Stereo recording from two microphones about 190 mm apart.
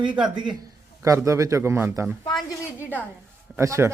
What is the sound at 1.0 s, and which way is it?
A man's voice, 15° right (ahead or behind).